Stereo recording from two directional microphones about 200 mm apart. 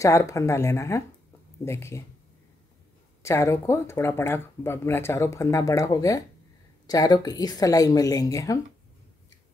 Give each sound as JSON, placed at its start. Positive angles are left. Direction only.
{"t": 0.0, "sound": "speech", "side_deg": 15}
{"t": 3.2, "sound": "speech", "side_deg": 15}